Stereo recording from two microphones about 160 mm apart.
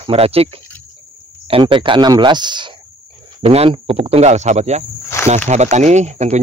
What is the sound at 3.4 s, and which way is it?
Speech, 40° right (ahead or behind).